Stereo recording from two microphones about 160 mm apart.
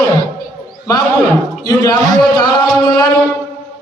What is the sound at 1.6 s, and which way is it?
Speech, 25° left (ahead or behind).